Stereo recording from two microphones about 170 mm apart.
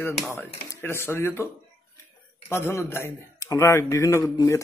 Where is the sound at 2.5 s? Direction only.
15° left (ahead or behind).